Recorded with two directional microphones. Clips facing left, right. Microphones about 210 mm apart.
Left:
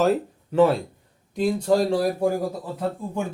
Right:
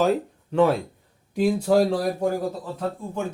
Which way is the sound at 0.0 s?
Centre (ahead or behind).